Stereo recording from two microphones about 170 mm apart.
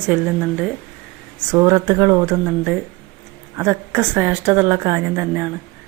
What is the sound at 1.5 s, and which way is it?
A woman's voice, 20° right (ahead or behind).